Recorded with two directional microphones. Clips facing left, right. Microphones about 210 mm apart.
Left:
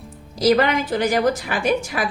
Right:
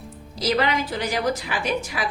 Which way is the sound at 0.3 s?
50° left (ahead or behind).